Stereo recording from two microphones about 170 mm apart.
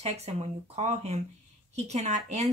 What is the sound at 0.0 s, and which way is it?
Speech, 40° right (ahead or behind).